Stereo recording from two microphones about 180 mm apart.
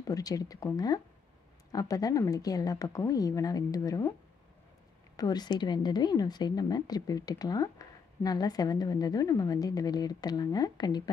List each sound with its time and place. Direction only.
0.1 s a woman's voice: 20° left (ahead or behind)
5.1 s a woman's voice: 20° left (ahead or behind)